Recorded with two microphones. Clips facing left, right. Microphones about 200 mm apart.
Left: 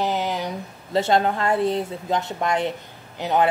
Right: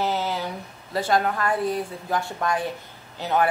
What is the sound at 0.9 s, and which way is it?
A woman's voice, 25° left (ahead or behind).